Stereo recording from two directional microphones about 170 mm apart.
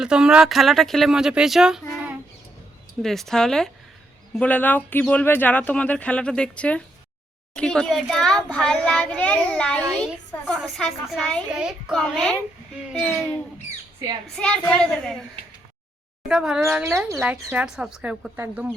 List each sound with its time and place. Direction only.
0.0 s a child's voice: 5° right (ahead or behind)
3.0 s a child's voice: centre (ahead or behind)
16.3 s a child's voice: 5° right (ahead or behind)
16.6 s speech: 15° right (ahead or behind)